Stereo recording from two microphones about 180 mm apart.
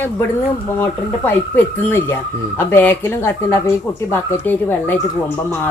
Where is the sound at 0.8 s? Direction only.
10° left (ahead or behind).